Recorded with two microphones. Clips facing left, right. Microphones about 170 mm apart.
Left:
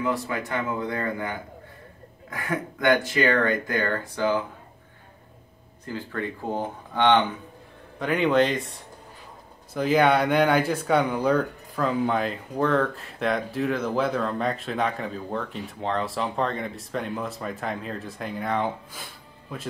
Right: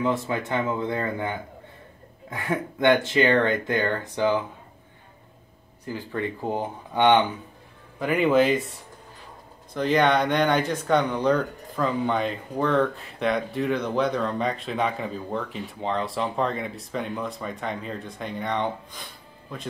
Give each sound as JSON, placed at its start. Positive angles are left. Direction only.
{"t": 0.0, "sound": "speech", "side_deg": -25}
{"t": 5.9, "sound": "speech", "side_deg": -15}
{"t": 8.0, "sound": "speech", "side_deg": 0}
{"t": 9.8, "sound": "speech", "side_deg": 5}